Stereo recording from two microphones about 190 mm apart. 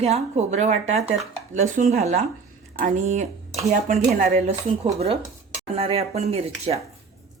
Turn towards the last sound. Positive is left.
turn(degrees=-35)  # may be behind; listen again after turning